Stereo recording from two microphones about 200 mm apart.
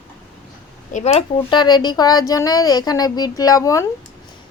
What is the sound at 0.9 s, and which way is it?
Speech, 30° left (ahead or behind).